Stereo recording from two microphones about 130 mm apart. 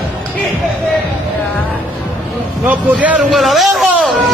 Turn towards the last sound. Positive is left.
turn(degrees=0)  # may be behind; listen again after turning